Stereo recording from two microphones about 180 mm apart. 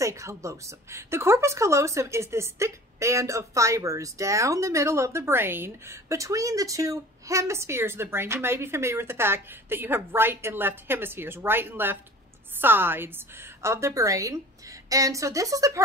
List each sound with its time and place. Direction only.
0.0 s speech: 15° right (ahead or behind)